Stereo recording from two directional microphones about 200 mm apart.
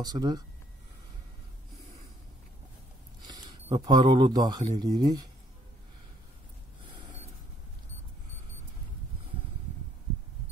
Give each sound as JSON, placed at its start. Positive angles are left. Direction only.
{"t": 0.0, "sound": "speech", "side_deg": -20}
{"t": 3.3, "sound": "a sound", "side_deg": -20}
{"t": 3.6, "sound": "speech", "side_deg": -20}
{"t": 6.8, "sound": "gasp", "side_deg": -25}